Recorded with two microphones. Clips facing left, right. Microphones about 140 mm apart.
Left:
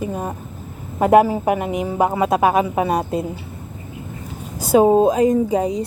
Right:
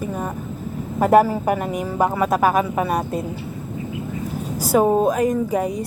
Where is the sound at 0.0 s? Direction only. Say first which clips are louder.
Left 1 dB; 15° left (ahead or behind).